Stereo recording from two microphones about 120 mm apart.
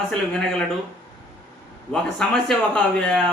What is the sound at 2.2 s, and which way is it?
A man's voice, 5° left (ahead or behind).